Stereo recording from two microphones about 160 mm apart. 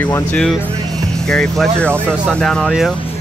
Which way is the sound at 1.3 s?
5° left (ahead or behind).